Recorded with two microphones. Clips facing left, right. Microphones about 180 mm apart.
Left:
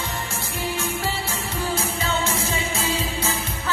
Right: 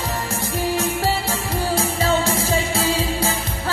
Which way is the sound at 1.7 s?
35° right (ahead or behind).